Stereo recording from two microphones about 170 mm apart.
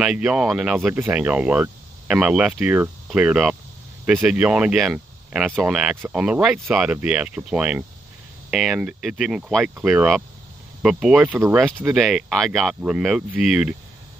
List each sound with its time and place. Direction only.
0.0 s speech: 5° right (ahead or behind)